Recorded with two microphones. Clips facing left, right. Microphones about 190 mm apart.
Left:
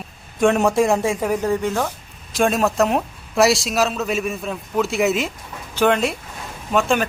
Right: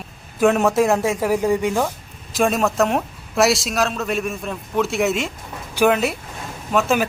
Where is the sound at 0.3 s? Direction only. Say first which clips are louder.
Even; centre (ahead or behind).